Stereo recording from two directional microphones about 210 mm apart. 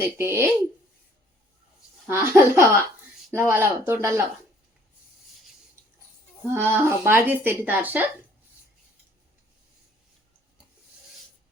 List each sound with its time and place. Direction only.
0.0 s speech: 10° right (ahead or behind)
2.0 s speech: 15° right (ahead or behind)
6.5 s speech: 10° right (ahead or behind)